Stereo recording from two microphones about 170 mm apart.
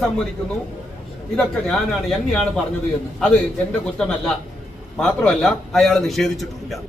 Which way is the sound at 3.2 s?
5° left (ahead or behind).